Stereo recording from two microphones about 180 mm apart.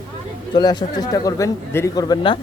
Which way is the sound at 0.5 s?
25° left (ahead or behind).